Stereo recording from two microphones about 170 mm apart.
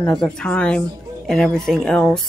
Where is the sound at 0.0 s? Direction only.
5° left (ahead or behind).